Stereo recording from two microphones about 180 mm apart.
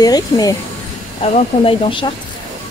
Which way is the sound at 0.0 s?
20° left (ahead or behind).